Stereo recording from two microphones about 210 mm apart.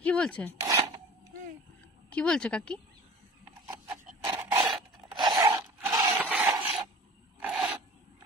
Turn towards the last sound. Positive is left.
turn(degrees=-5)  # may be behind; listen again after turning